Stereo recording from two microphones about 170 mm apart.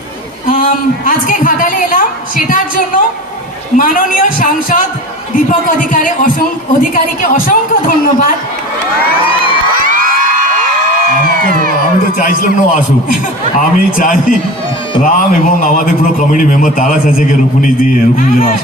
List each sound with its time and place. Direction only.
0.4 s a woman's voice: 55° left (ahead or behind)
12.1 s a woman's voice: 55° left (ahead or behind)